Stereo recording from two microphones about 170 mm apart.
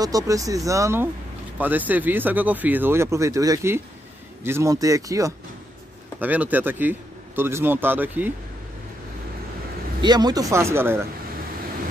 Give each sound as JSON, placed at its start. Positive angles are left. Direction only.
{"t": 0.0, "sound": "speech", "side_deg": -20}
{"t": 10.0, "sound": "speech", "side_deg": -25}